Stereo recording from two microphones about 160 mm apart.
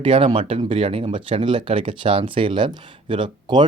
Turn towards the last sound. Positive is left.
turn(degrees=-30)  # may be behind; listen again after turning